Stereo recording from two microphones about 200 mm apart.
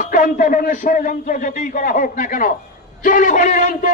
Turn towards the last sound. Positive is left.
turn(degrees=40)  # may be behind; listen again after turning